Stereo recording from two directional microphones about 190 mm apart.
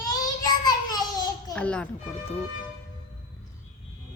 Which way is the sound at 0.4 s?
20° left (ahead or behind).